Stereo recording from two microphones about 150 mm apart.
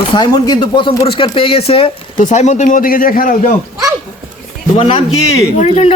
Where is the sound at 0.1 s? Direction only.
30° left (ahead or behind).